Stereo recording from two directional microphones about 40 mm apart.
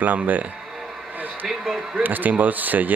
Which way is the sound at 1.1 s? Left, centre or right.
Right.